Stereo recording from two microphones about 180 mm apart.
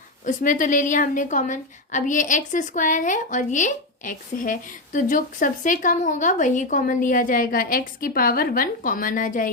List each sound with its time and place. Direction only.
0.3 s a woman's voice: 45° left (ahead or behind)